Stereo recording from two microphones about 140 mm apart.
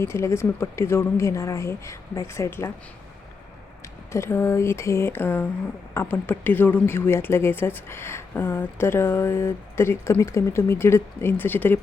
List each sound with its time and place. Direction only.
0.0 s speech: 20° left (ahead or behind)
4.1 s a woman's voice: 20° left (ahead or behind)